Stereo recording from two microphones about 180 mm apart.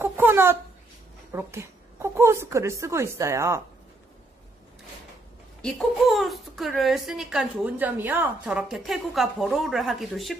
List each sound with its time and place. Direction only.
0.0 s a sound: 10° right (ahead or behind)
1.3 s a woman's voice: 15° right (ahead or behind)
5.6 s speech: centre (ahead or behind)